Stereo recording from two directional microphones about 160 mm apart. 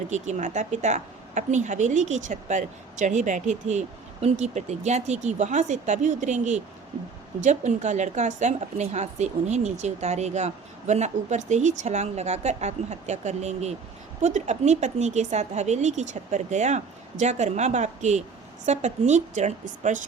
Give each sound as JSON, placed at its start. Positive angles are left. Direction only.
{"t": 0.1, "sound": "a woman's voice", "side_deg": -45}